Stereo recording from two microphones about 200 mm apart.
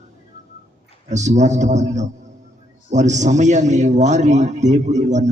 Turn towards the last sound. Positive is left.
turn(degrees=-35)  # may be behind; listen again after turning